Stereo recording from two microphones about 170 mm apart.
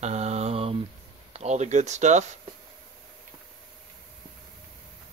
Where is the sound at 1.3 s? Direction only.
40° right (ahead or behind).